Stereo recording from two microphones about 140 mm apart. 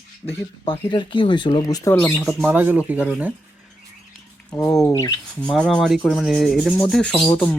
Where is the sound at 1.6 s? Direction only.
25° left (ahead or behind).